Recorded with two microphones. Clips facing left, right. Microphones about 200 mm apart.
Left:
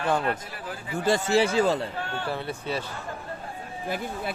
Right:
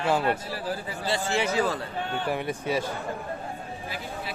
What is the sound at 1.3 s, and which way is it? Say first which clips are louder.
Speech: left 4 dB; 30° left (ahead or behind).